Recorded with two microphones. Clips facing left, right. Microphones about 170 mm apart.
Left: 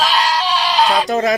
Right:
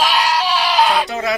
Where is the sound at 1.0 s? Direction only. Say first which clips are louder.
Left 5 dB; 45° left (ahead or behind).